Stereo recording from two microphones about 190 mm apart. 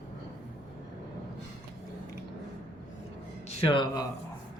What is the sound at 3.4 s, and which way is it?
Speech, 30° left (ahead or behind).